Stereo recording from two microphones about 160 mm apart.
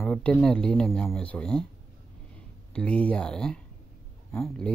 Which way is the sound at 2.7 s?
5° left (ahead or behind).